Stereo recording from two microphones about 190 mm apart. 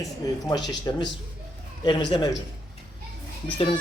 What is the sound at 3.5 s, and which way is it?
Speech, 25° left (ahead or behind).